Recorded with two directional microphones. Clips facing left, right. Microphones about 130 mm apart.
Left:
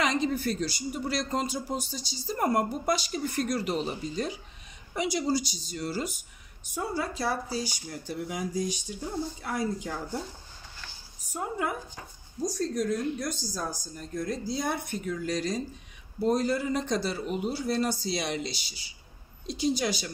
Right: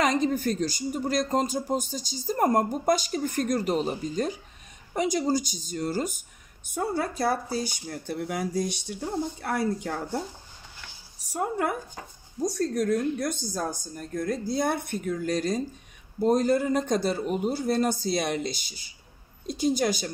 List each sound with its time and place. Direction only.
0.0 s a woman's voice: 45° right (ahead or behind); by 8.9 s 70° right (ahead or behind)
9.4 s a woman's voice: 60° right (ahead or behind)
11.3 s a woman's voice: 60° right (ahead or behind)